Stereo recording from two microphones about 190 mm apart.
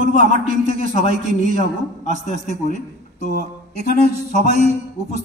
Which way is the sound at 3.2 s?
45° left (ahead or behind).